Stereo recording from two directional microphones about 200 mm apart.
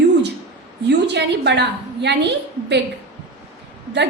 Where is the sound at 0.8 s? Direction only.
60° right (ahead or behind).